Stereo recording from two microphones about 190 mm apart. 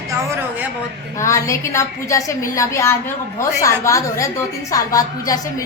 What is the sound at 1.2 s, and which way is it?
A woman's voice, 15° left (ahead or behind).